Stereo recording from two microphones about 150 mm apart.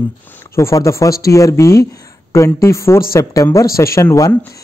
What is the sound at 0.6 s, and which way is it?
Speech, 20° left (ahead or behind).